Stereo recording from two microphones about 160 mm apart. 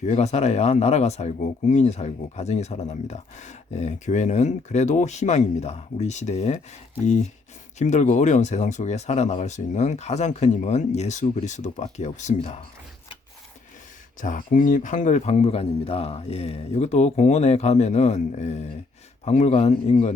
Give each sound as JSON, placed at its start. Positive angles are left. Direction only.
{"t": 0.0, "sound": "speech", "side_deg": 45}
{"t": 14.2, "sound": "speech", "side_deg": 55}